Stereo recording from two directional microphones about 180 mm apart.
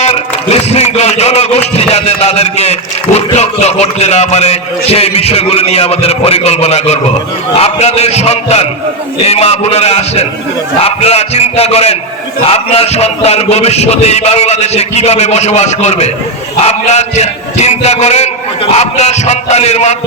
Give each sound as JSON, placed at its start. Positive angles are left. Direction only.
{"t": 0.0, "sound": "a man's voice", "side_deg": 35}